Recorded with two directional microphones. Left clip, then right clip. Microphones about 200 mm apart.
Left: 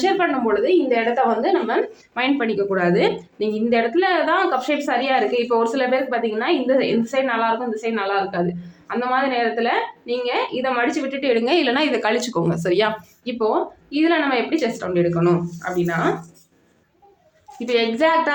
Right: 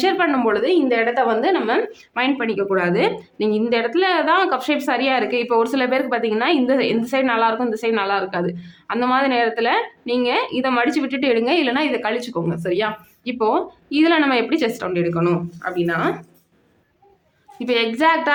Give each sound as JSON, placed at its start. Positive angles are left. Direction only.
{"t": 0.0, "sound": "a woman's voice", "side_deg": -30}
{"t": 2.1, "sound": "a woman's voice", "side_deg": -20}
{"t": 13.2, "sound": "a woman's voice", "side_deg": -25}
{"t": 17.6, "sound": "a woman's voice", "side_deg": -30}